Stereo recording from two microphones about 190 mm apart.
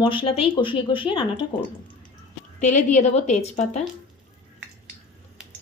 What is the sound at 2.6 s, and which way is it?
A woman's voice, 40° left (ahead or behind).